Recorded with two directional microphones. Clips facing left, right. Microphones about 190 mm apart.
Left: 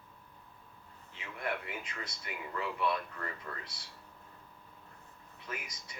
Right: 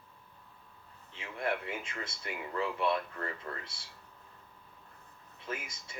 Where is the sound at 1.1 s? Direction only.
25° right (ahead or behind).